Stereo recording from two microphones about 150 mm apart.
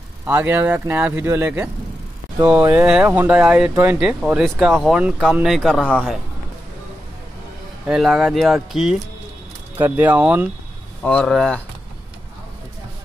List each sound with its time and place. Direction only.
0.3 s speech: 15° right (ahead or behind)
4.0 s speech: 5° right (ahead or behind)
7.8 s speech: 5° right (ahead or behind)
9.8 s speech: 15° right (ahead or behind)
11.1 s speech: 5° left (ahead or behind)